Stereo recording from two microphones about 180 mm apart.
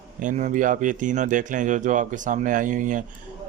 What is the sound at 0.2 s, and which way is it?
A man's voice, 45° right (ahead or behind).